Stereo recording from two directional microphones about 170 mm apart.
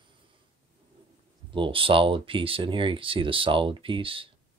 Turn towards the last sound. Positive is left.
turn(degrees=-30)  # may be behind; listen again after turning